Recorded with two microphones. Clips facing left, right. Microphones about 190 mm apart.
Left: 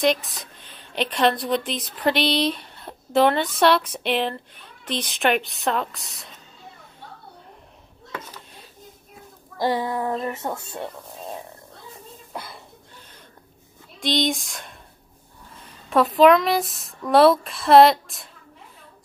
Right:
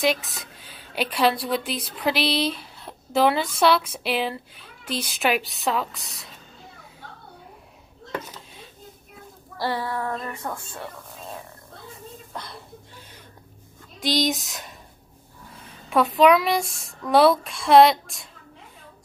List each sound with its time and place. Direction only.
0.0 s a woman's voice: centre (ahead or behind)
9.6 s speech: 20° left (ahead or behind)
12.3 s a sound: 5° left (ahead or behind)
13.9 s a woman's voice: centre (ahead or behind)
15.9 s a woman's voice: centre (ahead or behind)